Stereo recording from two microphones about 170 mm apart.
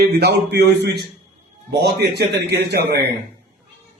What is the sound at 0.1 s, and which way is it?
A man's voice, 75° right (ahead or behind).